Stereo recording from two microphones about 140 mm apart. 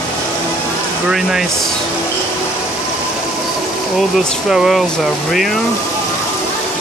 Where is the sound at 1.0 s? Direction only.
5° right (ahead or behind).